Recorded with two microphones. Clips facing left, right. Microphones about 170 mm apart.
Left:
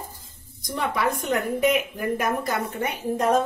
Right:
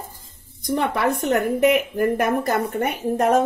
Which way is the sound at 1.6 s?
60° right (ahead or behind).